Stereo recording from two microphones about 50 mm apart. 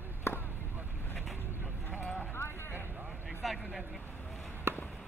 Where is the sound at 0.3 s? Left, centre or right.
Left.